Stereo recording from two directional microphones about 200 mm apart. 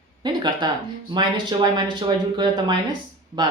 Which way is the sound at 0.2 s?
20° right (ahead or behind).